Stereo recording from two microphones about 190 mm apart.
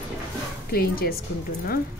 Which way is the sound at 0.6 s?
55° left (ahead or behind).